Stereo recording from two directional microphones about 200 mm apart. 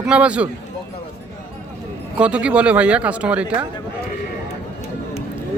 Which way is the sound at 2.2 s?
5° right (ahead or behind).